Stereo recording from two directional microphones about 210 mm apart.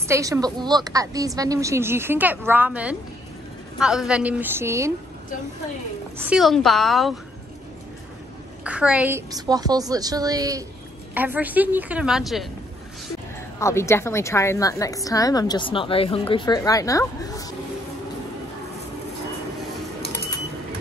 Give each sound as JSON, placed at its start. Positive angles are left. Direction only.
{"t": 0.1, "sound": "a woman's voice", "side_deg": -15}
{"t": 6.1, "sound": "a woman's voice", "side_deg": -5}
{"t": 8.6, "sound": "a woman's voice", "side_deg": -5}
{"t": 13.6, "sound": "a woman's voice", "side_deg": 15}